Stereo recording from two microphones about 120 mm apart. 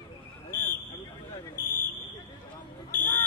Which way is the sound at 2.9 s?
15° left (ahead or behind).